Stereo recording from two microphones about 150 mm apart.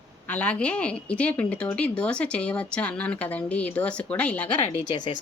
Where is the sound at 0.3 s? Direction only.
10° left (ahead or behind).